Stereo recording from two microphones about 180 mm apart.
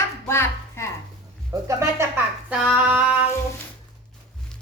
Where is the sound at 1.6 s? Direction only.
15° right (ahead or behind).